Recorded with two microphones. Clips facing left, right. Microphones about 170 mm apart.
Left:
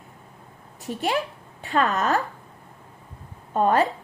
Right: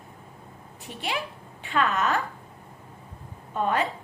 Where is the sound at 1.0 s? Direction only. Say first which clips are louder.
Left 6 dB; 45° left (ahead or behind).